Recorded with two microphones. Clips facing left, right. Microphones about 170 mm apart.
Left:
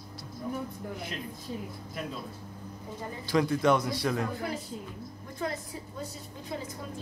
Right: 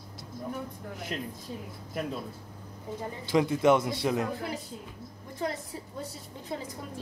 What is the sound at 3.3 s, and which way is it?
A man's voice, 20° right (ahead or behind).